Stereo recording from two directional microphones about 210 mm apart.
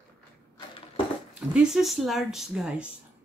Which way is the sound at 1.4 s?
5° right (ahead or behind).